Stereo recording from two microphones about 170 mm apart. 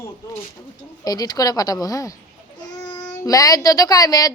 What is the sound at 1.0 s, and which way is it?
A woman's voice, 20° left (ahead or behind).